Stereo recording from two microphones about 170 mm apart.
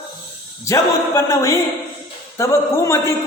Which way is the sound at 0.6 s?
20° left (ahead or behind).